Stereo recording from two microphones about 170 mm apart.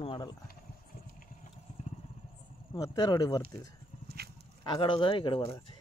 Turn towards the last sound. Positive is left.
turn(degrees=30)  # may be behind; listen again after turning